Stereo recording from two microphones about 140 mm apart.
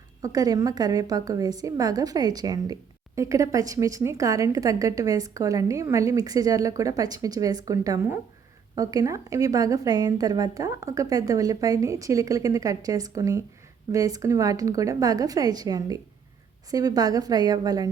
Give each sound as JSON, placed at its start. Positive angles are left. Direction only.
{"t": 0.2, "sound": "a woman's voice", "side_deg": -25}